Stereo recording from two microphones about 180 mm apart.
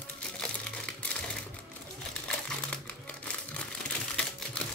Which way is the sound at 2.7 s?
10° left (ahead or behind).